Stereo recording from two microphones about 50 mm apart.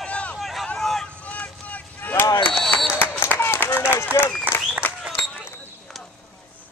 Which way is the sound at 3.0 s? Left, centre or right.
Left.